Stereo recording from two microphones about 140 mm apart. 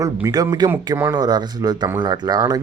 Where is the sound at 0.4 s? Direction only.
25° right (ahead or behind).